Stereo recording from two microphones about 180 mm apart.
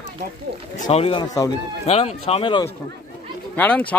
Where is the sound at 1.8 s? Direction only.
35° left (ahead or behind).